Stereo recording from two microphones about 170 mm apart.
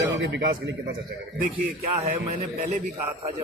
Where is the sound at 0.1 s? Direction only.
90° right.